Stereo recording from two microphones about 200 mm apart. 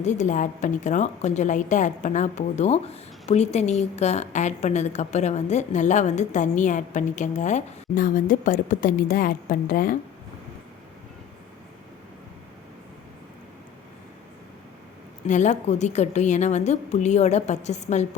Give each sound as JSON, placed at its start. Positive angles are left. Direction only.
{"t": 0.0, "sound": "a woman's voice", "side_deg": 35}
{"t": 15.3, "sound": "a woman's voice", "side_deg": 35}